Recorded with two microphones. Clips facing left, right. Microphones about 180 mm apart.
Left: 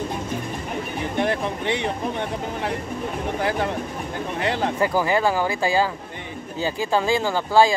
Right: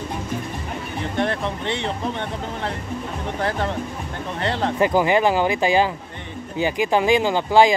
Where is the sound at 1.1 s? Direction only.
10° left (ahead or behind).